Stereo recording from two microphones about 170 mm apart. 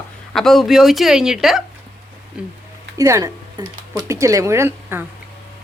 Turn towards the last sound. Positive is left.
turn(degrees=-15)  # may be behind; listen again after turning